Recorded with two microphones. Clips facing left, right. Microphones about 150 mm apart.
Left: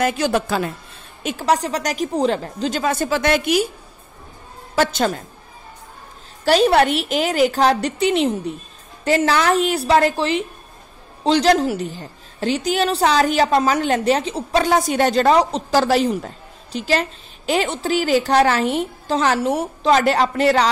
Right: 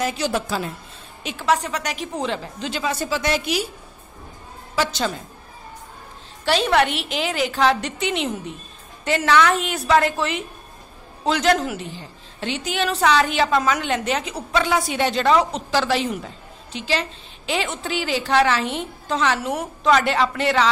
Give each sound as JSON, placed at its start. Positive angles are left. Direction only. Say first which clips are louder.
{"t": 0.0, "sound": "a woman's voice", "louder": "left 4 dB", "side_deg": 60}
{"t": 1.2, "sound": "a woman's voice", "louder": "left 2 dB", "side_deg": 40}
{"t": 4.7, "sound": "a woman's voice", "louder": "left 5 dB", "side_deg": 50}
{"t": 6.4, "sound": "a woman's voice", "louder": "left 4 dB", "side_deg": 40}